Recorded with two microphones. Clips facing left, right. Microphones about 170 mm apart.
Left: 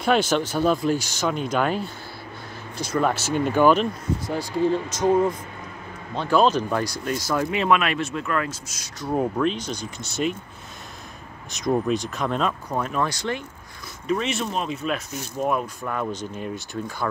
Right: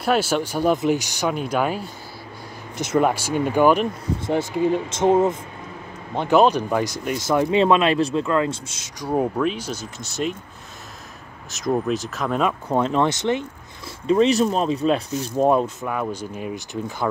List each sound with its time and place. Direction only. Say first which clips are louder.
0.0 s speech: even; 5° right (ahead or behind)
2.8 s speech: right 4 dB; 20° right (ahead or behind)
3.1 s speech: right 1 dB; 10° right (ahead or behind)
4.8 s speech: right 2 dB; 25° right (ahead or behind)
9.0 s speech: right 1 dB; 15° right (ahead or behind)
11.5 s speech: even; centre (ahead or behind)
12.6 s speech: right 6 dB; 25° right (ahead or behind)
14.0 s speech: right 8 dB; 30° right (ahead or behind)
15.8 s speech: right 2 dB; 5° right (ahead or behind)